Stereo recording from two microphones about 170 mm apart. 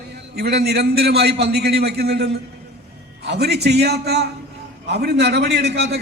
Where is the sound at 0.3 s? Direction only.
70° right (ahead or behind).